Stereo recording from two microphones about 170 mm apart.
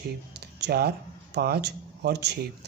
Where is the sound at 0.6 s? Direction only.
70° right (ahead or behind).